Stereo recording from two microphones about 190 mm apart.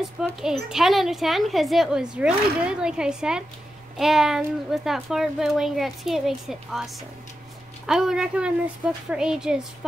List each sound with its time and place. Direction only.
0.2 s a woman's voice: 5° right (ahead or behind)